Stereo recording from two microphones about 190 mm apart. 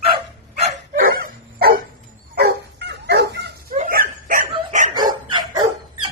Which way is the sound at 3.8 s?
45° right (ahead or behind).